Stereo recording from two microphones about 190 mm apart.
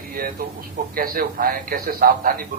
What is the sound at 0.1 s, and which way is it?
A man's voice, 50° right (ahead or behind).